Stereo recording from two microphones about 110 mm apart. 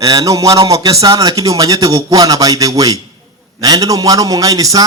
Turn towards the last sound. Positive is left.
turn(degrees=-30)  # may be behind; listen again after turning